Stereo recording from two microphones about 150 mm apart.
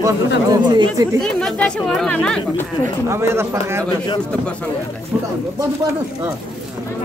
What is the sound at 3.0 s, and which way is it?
Speech, 15° right (ahead or behind).